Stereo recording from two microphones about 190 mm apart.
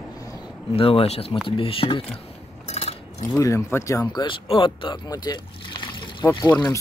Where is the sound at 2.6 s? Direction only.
35° left (ahead or behind).